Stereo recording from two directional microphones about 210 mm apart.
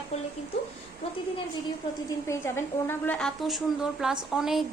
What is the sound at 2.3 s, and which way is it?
A woman's voice, 10° left (ahead or behind).